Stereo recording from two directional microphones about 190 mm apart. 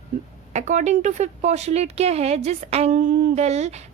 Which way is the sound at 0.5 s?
40° right (ahead or behind).